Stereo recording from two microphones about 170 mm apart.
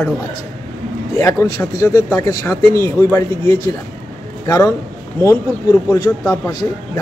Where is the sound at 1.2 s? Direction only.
20° left (ahead or behind).